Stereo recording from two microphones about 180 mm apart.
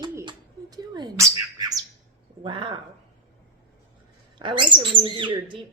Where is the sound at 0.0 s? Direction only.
25° right (ahead or behind).